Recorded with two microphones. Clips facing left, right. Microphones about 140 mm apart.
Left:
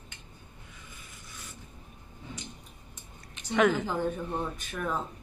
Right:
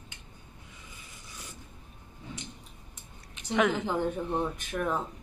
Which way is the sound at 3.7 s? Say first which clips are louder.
Right 1 dB; 20° right (ahead or behind).